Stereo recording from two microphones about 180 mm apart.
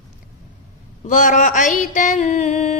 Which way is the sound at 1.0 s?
45° left (ahead or behind).